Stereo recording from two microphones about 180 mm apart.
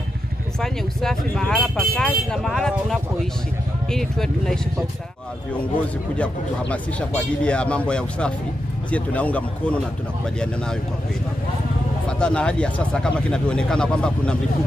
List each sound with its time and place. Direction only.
0.6 s speech: 5° left (ahead or behind)
6.1 s speech: 5° left (ahead or behind)
12.1 s speech: 5° left (ahead or behind)